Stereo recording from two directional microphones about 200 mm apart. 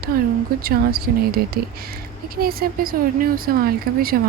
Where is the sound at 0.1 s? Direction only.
50° right (ahead or behind).